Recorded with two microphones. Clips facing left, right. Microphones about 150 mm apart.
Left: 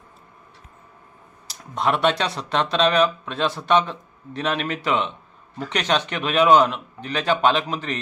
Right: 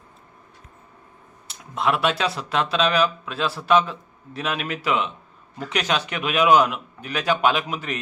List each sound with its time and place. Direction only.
1.7 s a man's voice: centre (ahead or behind)